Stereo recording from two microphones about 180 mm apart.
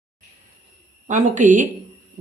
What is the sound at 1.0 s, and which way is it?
Speech, 45° right (ahead or behind).